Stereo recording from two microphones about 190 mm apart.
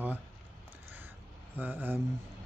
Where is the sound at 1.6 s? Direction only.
10° right (ahead or behind).